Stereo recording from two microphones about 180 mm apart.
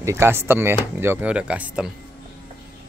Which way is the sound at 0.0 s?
15° right (ahead or behind).